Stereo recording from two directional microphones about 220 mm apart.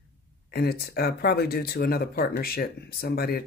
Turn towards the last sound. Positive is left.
turn(degrees=45)  # may be behind; listen again after turning